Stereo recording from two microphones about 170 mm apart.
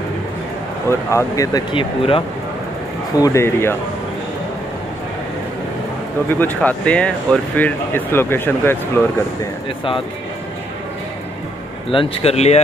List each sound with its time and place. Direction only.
0.8 s speech: 20° left (ahead or behind)
3.2 s speech: 20° left (ahead or behind)
6.4 s speech: 10° left (ahead or behind)
11.9 s speech: 35° left (ahead or behind)